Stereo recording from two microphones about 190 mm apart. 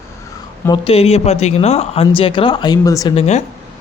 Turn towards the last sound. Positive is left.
turn(degrees=35)  # may be behind; listen again after turning